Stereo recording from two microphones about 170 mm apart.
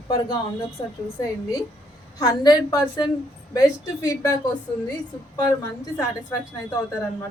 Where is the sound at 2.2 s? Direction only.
20° left (ahead or behind).